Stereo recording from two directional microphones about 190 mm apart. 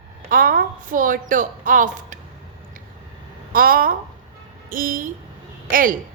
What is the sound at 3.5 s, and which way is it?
A woman's voice, 50° right (ahead or behind).